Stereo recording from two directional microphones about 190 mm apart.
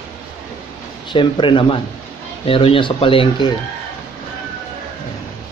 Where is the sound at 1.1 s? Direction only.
25° left (ahead or behind).